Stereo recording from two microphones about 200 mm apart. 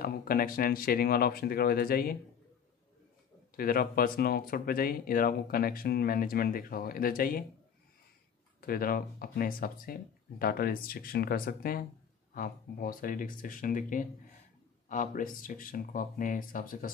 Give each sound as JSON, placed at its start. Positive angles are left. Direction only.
{"t": 0.0, "sound": "speech", "side_deg": 45}
{"t": 3.5, "sound": "speech", "side_deg": 45}
{"t": 8.5, "sound": "speech", "side_deg": 45}